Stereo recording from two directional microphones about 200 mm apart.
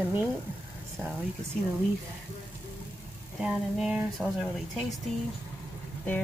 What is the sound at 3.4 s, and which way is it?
Speech, 5° right (ahead or behind).